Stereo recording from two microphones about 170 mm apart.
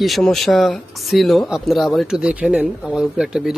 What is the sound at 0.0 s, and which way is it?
Speech, centre (ahead or behind).